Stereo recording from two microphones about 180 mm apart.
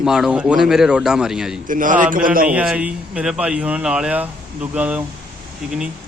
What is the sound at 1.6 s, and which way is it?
Speech, 50° right (ahead or behind).